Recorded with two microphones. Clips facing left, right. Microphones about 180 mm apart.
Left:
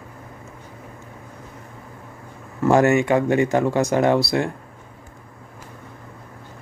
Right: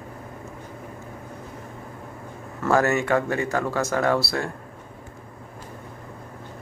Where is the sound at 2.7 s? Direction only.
15° left (ahead or behind).